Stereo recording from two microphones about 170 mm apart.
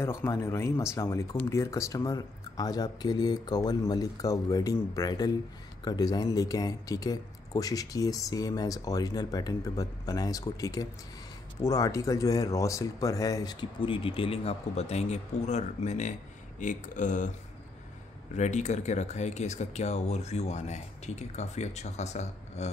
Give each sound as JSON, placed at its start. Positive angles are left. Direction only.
{"t": 0.0, "sound": "speech", "side_deg": 15}
{"t": 18.3, "sound": "speech", "side_deg": 45}